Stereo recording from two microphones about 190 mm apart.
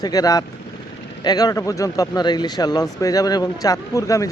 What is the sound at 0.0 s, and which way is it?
Speech, 20° left (ahead or behind).